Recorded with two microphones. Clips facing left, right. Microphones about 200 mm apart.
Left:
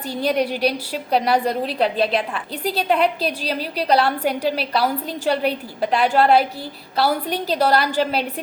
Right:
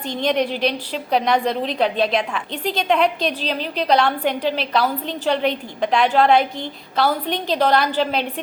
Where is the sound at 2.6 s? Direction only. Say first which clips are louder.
Left 1 dB; 35° left (ahead or behind).